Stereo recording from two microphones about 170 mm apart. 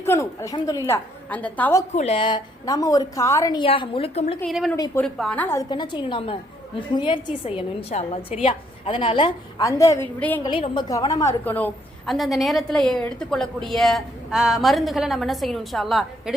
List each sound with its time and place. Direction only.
0.0 s a woman's voice: 15° left (ahead or behind)
0.9 s a woman's voice: 10° left (ahead or behind)
1.9 s a woman's voice: 40° left (ahead or behind)
5.0 s a woman's voice: centre (ahead or behind)
5.6 s a woman's voice: 25° left (ahead or behind); by 10.4 s 10° left (ahead or behind)
10.4 s a woman's voice: 30° left (ahead or behind); by 16.3 s centre (ahead or behind)